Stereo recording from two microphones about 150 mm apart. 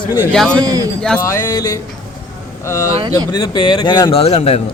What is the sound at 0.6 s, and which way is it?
Speech, 25° right (ahead or behind).